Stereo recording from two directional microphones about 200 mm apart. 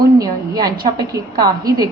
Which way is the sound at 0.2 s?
20° right (ahead or behind).